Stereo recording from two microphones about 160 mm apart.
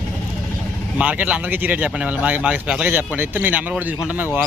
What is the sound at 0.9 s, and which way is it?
Speech, 10° right (ahead or behind).